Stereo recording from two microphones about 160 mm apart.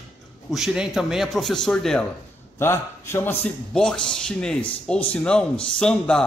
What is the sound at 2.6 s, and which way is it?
Speech, 15° left (ahead or behind).